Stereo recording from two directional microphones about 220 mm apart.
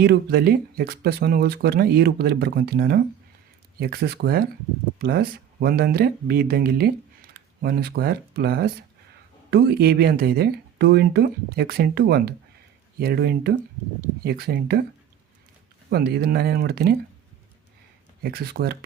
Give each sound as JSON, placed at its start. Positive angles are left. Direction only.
{"t": 0.0, "sound": "speech", "side_deg": -45}
{"t": 15.9, "sound": "speech", "side_deg": -45}
{"t": 18.2, "sound": "speech", "side_deg": -45}